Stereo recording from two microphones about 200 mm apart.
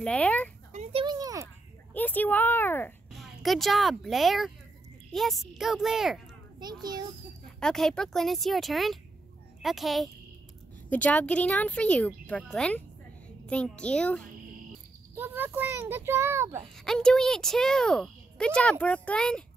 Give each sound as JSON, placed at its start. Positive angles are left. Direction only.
{"t": 0.0, "sound": "speech", "side_deg": 5}
{"t": 0.7, "sound": "a sound", "side_deg": -25}
{"t": 2.0, "sound": "speech", "side_deg": 10}
{"t": 6.6, "sound": "a child's voice", "side_deg": -20}
{"t": 7.6, "sound": "speech", "side_deg": 5}
{"t": 15.1, "sound": "a child's voice", "side_deg": -10}
{"t": 16.7, "sound": "speech", "side_deg": 5}